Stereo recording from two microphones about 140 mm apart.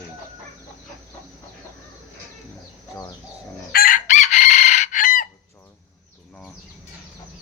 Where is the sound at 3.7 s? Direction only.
80° left.